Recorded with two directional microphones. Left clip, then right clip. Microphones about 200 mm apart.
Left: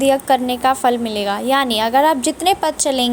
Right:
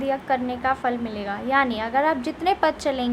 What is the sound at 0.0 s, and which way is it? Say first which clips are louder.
A woman's voice: left 9 dB; 30° left (ahead or behind).